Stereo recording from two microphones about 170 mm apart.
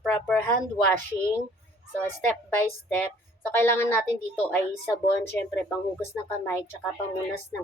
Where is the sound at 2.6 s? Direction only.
10° left (ahead or behind).